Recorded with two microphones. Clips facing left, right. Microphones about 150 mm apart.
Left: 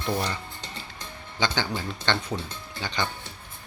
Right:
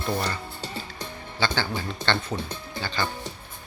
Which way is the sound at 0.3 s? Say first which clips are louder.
Right 2 dB; 10° right (ahead or behind).